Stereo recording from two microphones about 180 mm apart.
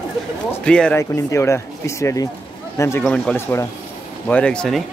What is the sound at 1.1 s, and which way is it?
Speech, 15° left (ahead or behind).